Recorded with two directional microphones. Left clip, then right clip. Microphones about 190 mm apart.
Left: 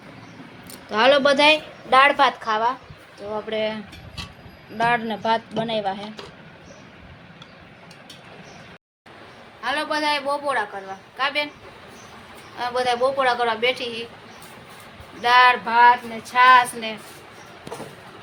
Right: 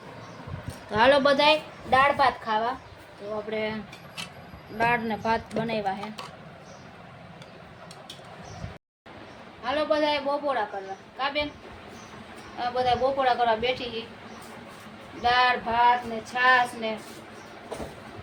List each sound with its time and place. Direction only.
0.9 s a woman's voice: 5° left (ahead or behind)
1.9 s a woman's voice: 30° left (ahead or behind)
3.5 s a woman's voice: 20° left (ahead or behind)
4.8 s a woman's voice: 10° left (ahead or behind)
9.6 s a man's voice: 5° left (ahead or behind)
12.5 s a man's voice: 5° left (ahead or behind)
15.2 s a man's voice: 5° left (ahead or behind)